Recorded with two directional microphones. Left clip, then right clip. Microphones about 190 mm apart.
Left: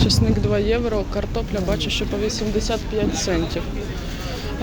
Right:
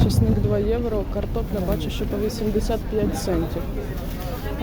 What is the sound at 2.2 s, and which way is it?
Speech, 20° right (ahead or behind).